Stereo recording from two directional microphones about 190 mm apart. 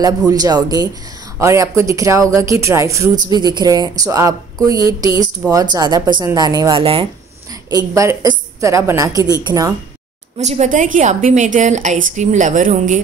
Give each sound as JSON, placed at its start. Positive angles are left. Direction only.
{"t": 0.0, "sound": "a woman's voice", "side_deg": -20}
{"t": 7.7, "sound": "speech", "side_deg": -15}
{"t": 10.4, "sound": "a woman's voice", "side_deg": -35}